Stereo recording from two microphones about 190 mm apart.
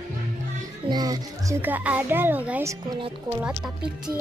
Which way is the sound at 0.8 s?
20° right (ahead or behind).